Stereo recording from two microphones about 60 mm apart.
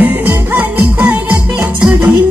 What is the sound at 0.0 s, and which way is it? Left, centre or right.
Music, right.